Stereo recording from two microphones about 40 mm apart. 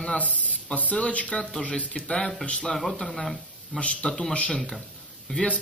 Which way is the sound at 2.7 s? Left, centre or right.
Centre.